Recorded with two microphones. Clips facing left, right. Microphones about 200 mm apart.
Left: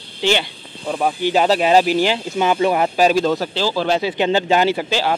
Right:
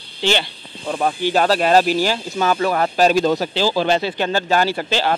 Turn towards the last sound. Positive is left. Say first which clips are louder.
# even
turn(degrees=5)  # may be behind; listen again after turning